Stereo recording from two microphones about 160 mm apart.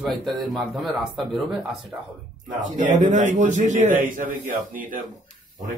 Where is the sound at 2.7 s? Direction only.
50° right (ahead or behind).